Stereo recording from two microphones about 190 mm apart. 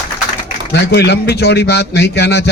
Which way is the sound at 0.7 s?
60° left (ahead or behind).